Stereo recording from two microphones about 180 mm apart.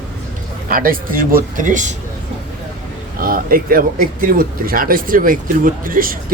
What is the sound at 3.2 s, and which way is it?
Speech, 55° right (ahead or behind).